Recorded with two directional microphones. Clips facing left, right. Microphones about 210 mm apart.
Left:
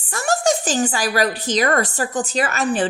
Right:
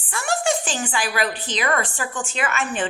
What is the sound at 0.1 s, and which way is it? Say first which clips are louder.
Speech: left 4 dB; 40° left (ahead or behind).